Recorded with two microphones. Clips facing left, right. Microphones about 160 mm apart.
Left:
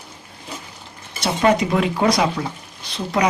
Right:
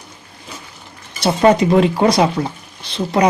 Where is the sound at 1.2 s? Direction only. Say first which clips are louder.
Right 5 dB; 35° right (ahead or behind).